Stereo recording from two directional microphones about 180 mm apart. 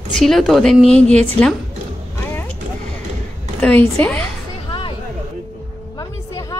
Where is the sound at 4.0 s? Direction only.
10° left (ahead or behind).